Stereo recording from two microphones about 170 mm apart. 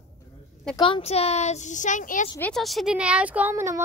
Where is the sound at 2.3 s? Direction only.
5° left (ahead or behind); by 3.8 s 15° right (ahead or behind).